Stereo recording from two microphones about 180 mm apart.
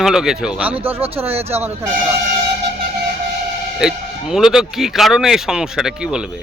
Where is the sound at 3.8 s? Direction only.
5° right (ahead or behind).